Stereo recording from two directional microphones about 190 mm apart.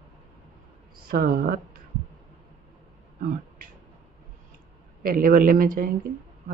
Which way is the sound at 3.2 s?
45° right (ahead or behind).